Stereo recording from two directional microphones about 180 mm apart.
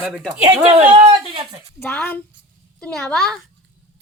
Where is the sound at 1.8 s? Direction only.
10° left (ahead or behind).